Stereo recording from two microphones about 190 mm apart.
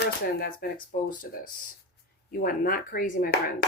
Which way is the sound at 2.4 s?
50° left (ahead or behind).